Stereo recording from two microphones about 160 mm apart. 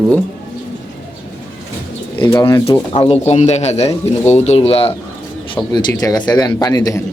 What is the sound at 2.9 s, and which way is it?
A man's voice, 40° left (ahead or behind).